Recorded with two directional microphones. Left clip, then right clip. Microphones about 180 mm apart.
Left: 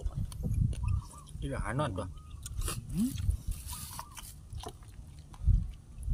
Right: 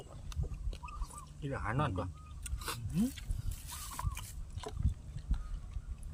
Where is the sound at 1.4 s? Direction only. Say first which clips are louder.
Left 1 dB; 25° left (ahead or behind).